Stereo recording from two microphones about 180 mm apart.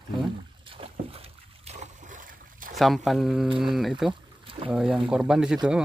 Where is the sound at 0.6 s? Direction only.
30° right (ahead or behind); by 2.7 s 50° right (ahead or behind).